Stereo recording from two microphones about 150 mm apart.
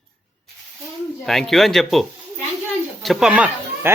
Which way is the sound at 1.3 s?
Centre (ahead or behind).